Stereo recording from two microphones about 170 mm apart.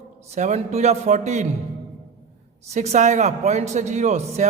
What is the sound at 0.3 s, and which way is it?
Speech, 45° right (ahead or behind).